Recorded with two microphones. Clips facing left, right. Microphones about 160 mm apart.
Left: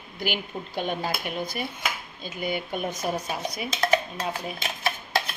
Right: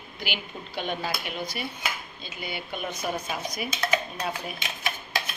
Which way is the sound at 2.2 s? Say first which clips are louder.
Left 9 dB; 45° left (ahead or behind).